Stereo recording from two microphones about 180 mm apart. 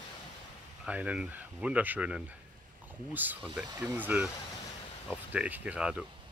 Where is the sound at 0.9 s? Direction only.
5° right (ahead or behind).